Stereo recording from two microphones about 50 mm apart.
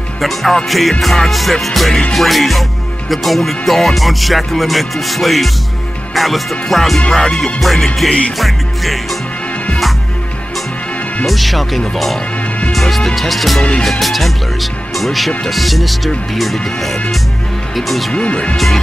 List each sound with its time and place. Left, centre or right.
0.2 s speech: centre
7.1 s music: centre
7.6 s speech: centre
11.2 s speech: centre
18.1 s speech: left